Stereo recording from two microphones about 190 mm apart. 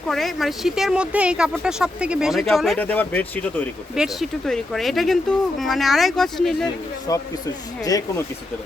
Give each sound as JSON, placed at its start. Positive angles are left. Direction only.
{"t": 0.1, "sound": "speech", "side_deg": 0}
{"t": 3.9, "sound": "speech", "side_deg": 0}
{"t": 7.1, "sound": "speech", "side_deg": 20}